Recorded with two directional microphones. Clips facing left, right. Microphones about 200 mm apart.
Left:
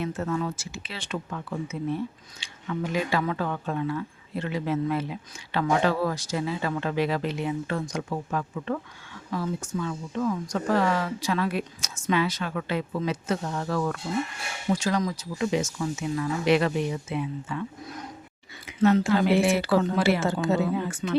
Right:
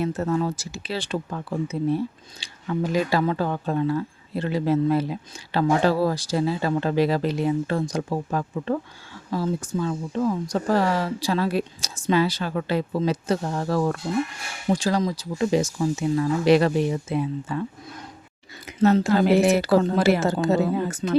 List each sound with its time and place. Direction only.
0.0 s speech: 40° right (ahead or behind)